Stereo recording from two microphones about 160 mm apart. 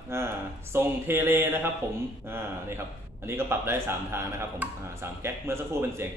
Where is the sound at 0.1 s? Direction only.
15° right (ahead or behind).